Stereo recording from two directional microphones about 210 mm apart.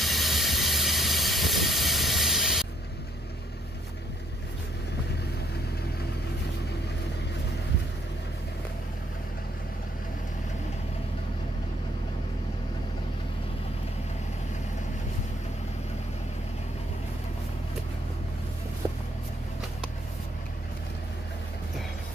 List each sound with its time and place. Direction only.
0.0 s vehicle: centre (ahead or behind)
18.8 s music: 15° right (ahead or behind)